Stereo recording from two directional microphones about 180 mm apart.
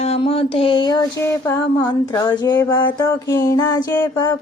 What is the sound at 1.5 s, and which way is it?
Female singing, 15° left (ahead or behind).